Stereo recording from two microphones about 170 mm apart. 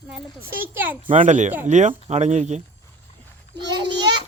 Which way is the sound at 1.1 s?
45° right (ahead or behind).